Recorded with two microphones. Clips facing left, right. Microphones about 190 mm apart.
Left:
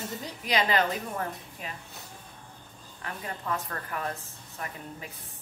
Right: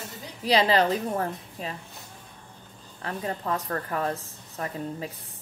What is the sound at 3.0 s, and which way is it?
A woman's voice, 35° right (ahead or behind).